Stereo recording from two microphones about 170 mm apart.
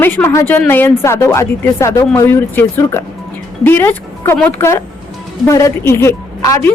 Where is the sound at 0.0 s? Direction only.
15° left (ahead or behind).